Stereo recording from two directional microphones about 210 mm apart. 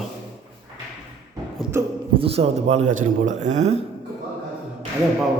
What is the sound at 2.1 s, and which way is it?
Speech, 25° right (ahead or behind).